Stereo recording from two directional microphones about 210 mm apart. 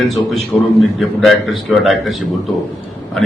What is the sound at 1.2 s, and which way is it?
Speech, centre (ahead or behind).